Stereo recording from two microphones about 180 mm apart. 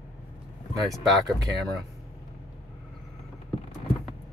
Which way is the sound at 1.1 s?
Centre (ahead or behind).